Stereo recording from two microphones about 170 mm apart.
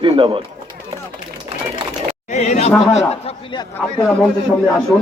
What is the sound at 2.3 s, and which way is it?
A man's voice, 45° left (ahead or behind).